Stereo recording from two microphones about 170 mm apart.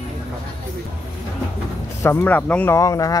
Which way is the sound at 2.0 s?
15° left (ahead or behind).